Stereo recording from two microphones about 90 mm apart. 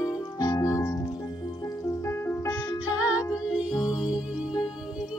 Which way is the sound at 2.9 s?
15° right (ahead or behind).